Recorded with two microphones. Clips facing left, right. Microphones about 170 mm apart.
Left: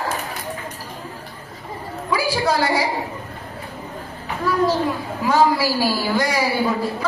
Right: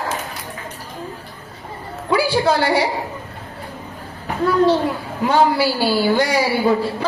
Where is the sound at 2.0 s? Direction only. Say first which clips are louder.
Right 4 dB; 30° right (ahead or behind).